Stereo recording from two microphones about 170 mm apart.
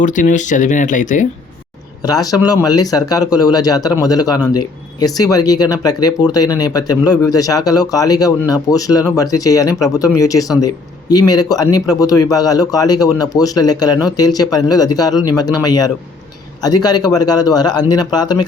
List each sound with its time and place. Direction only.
0.0 s speech: 50° left (ahead or behind)
2.0 s speech: 20° left (ahead or behind)